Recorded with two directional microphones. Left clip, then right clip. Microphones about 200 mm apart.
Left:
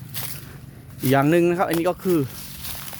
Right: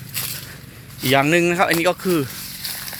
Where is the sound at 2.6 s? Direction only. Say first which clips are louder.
Right 6 dB; 5° right (ahead or behind).